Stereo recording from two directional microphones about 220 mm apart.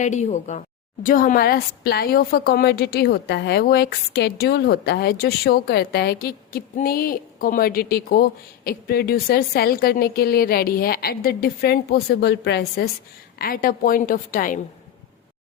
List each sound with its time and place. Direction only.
0.0 s a woman's voice: 30° left (ahead or behind)